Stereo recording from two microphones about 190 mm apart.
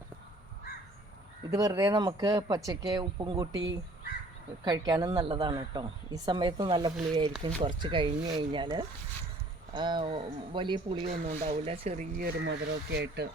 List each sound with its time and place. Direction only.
1.5 s a woman's voice: 20° right (ahead or behind)
3.5 s speech: 70° right (ahead or behind)
4.6 s a woman's voice: 20° right (ahead or behind)
11.1 s speech: 40° right (ahead or behind)
12.5 s speech: 60° right (ahead or behind)